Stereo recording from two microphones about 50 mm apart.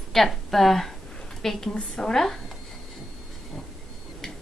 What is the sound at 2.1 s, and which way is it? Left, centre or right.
Speech, centre.